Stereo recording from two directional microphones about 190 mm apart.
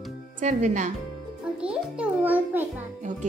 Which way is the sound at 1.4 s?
5° right (ahead or behind).